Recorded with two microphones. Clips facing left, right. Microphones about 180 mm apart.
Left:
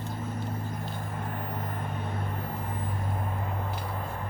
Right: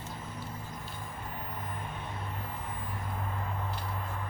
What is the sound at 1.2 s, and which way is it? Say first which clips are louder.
Vehicle: left 6 dB; 60° left (ahead or behind).